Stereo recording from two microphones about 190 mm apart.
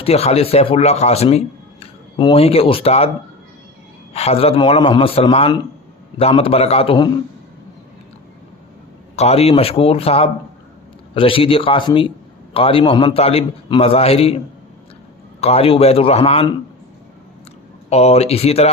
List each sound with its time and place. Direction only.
0.0 s speech: 30° left (ahead or behind)
4.1 s a man's voice: 30° left (ahead or behind)
9.1 s a man's voice: 35° left (ahead or behind)
15.4 s a man's voice: 30° left (ahead or behind)
17.8 s a man's voice: 35° left (ahead or behind)